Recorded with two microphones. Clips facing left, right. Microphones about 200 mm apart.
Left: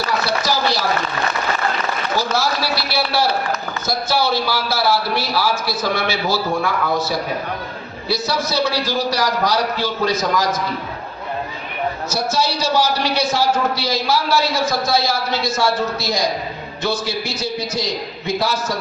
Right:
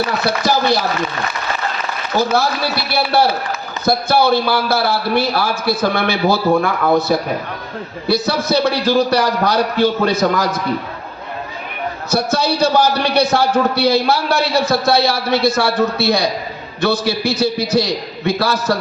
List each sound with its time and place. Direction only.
0.3 s speech: 55° right (ahead or behind)
2.1 s a man's voice: 55° right (ahead or behind)
12.1 s a man's voice: 60° right (ahead or behind)